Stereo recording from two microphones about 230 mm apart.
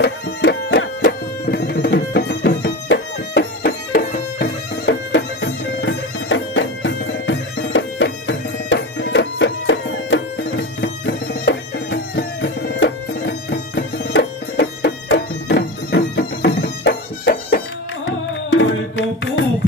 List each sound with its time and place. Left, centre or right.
0.0 s music: left